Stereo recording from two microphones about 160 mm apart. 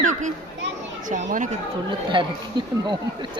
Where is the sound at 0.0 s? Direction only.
50° right (ahead or behind).